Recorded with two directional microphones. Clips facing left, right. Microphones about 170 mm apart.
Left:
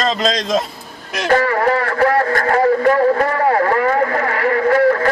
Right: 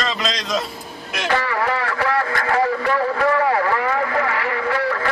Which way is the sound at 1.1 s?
45° left (ahead or behind).